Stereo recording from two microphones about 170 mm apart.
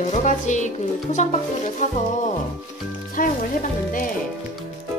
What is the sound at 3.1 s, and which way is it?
Speech, 55° left (ahead or behind).